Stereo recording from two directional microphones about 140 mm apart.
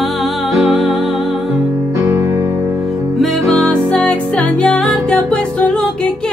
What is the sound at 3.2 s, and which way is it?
Music, 5° left (ahead or behind).